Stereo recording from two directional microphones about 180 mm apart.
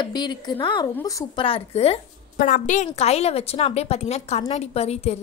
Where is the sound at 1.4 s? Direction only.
35° left (ahead or behind).